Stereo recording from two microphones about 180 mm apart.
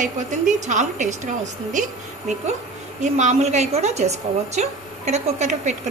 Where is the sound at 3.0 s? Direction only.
40° right (ahead or behind).